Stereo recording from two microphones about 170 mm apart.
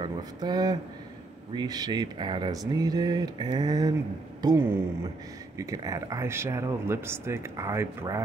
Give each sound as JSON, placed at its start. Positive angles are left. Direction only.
{"t": 0.0, "sound": "speech", "side_deg": -25}